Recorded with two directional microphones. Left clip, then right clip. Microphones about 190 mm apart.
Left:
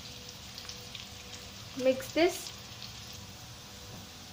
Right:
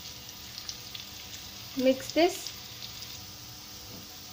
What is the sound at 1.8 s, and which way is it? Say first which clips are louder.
Speech: right 2 dB; 10° right (ahead or behind).